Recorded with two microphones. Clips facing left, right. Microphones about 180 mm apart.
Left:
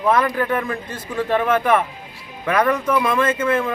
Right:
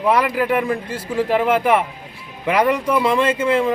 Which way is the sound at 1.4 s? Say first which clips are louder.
Right 1 dB; 30° right (ahead or behind).